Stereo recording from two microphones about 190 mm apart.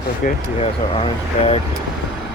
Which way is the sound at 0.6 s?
30° left (ahead or behind).